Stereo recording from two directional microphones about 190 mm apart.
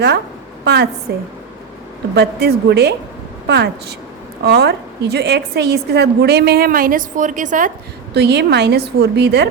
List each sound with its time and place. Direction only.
0.6 s a woman's voice: 60° right (ahead or behind); by 7.7 s 45° right (ahead or behind)
8.1 s a woman's voice: 60° right (ahead or behind)